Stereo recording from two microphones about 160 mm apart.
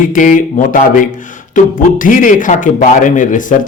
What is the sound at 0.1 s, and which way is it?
A man's voice, 55° left (ahead or behind).